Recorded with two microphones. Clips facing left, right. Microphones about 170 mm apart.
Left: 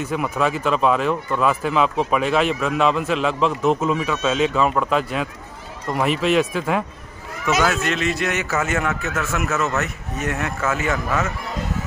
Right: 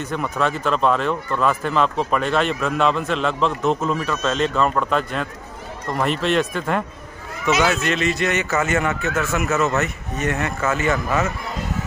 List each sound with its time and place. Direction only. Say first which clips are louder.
0.0 s a man's voice: left 1 dB; 5° left (ahead or behind)